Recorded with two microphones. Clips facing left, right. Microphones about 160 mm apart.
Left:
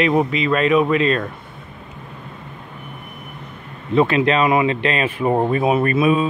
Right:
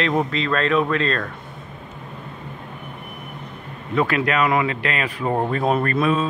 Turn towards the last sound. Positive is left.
turn(degrees=10)  # may be behind; listen again after turning